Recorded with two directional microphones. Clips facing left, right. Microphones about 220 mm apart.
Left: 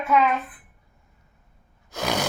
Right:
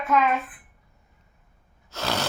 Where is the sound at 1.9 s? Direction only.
15° left (ahead or behind).